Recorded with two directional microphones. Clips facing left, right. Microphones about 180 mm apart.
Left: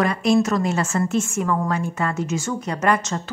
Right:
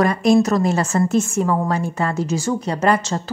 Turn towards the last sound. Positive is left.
turn(degrees=-30)  # may be behind; listen again after turning